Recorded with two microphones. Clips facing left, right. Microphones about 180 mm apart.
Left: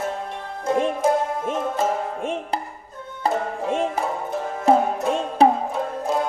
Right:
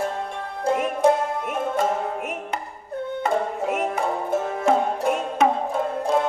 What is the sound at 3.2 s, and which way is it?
Music, 30° left (ahead or behind).